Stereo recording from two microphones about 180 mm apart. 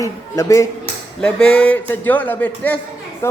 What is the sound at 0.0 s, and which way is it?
A man's voice, 15° left (ahead or behind).